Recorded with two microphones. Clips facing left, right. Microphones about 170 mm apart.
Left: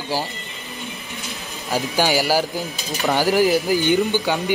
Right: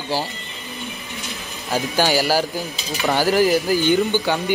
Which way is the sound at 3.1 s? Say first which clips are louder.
Even; 15° left (ahead or behind).